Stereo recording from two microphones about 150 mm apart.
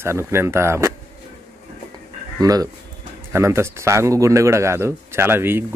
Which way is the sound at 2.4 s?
25° right (ahead or behind).